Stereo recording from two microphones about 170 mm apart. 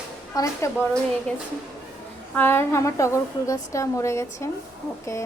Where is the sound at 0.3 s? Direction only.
20° left (ahead or behind).